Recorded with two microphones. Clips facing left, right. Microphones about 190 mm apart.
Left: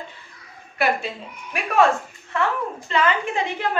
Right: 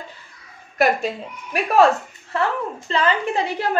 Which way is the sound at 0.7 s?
40° right (ahead or behind).